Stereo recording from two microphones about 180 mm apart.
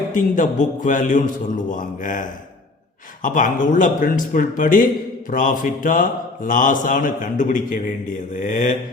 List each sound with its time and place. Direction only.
0.1 s speech: 45° left (ahead or behind)